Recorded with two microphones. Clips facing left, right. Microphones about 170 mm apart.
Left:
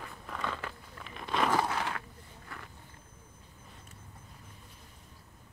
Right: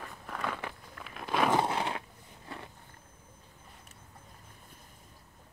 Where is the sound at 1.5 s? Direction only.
25° right (ahead or behind).